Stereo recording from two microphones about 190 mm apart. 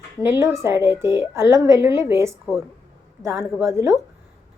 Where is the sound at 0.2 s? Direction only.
15° right (ahead or behind).